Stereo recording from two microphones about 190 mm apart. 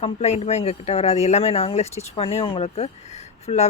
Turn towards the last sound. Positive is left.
turn(degrees=35)  # may be behind; listen again after turning